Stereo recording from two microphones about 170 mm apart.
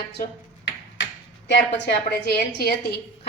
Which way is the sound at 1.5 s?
90° left.